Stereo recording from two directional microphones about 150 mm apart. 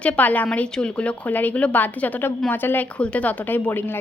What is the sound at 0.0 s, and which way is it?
A woman's voice, 10° left (ahead or behind).